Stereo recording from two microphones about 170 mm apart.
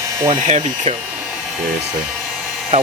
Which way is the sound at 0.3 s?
45° right (ahead or behind).